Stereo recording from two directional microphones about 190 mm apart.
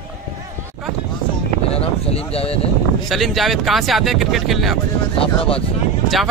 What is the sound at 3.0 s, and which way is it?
Speech, centre (ahead or behind).